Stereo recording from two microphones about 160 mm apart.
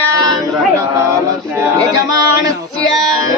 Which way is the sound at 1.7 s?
20° right (ahead or behind).